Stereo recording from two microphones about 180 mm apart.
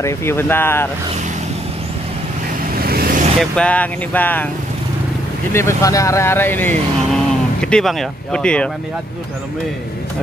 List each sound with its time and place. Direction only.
0.0 s speech: 15° left (ahead or behind)
2.7 s vehicle: 55° right (ahead or behind)
3.3 s speech: 5° left (ahead or behind)
5.5 s speech: 15° left (ahead or behind)